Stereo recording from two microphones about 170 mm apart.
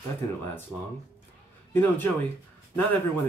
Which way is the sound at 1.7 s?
10° left (ahead or behind).